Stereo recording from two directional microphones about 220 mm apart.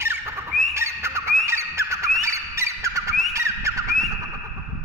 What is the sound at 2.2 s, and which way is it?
Squeak, 15° right (ahead or behind).